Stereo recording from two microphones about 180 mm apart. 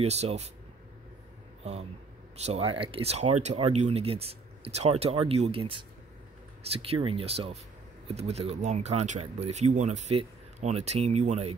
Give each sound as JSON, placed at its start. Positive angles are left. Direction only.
{"t": 0.0, "sound": "speech", "side_deg": -35}
{"t": 1.6, "sound": "speech", "side_deg": -35}